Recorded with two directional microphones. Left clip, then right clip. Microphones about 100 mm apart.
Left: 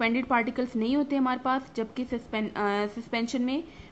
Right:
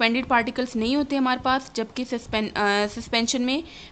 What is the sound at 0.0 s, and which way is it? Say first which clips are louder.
A woman's voice: right 5 dB; 15° right (ahead or behind).